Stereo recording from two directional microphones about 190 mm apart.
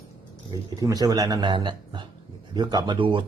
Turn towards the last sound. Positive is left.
turn(degrees=-25)  # may be behind; listen again after turning